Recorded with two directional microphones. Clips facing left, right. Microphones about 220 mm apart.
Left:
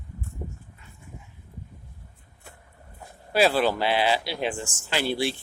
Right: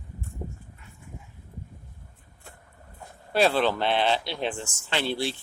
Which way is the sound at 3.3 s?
5° left (ahead or behind).